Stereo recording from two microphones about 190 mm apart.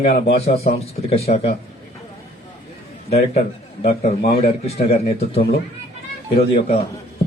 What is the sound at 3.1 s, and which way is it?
Speech, 35° left (ahead or behind).